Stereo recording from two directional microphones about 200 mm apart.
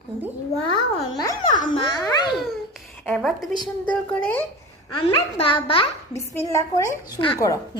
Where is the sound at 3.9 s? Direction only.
10° left (ahead or behind).